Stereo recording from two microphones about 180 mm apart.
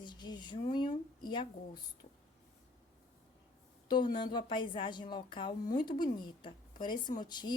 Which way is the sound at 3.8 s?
25° left (ahead or behind).